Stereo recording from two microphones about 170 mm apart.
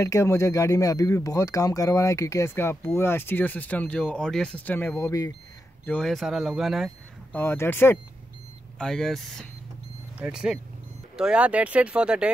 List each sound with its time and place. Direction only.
0.0 s speech: 15° left (ahead or behind)
5.9 s speech: 5° left (ahead or behind)
7.3 s speech: 15° left (ahead or behind); by 12.3 s 5° right (ahead or behind)